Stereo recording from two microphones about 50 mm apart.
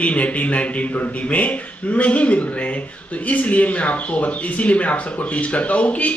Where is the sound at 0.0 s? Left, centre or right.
Left.